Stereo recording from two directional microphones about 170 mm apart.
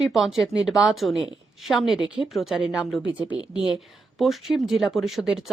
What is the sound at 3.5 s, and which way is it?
Speech, 25° left (ahead or behind).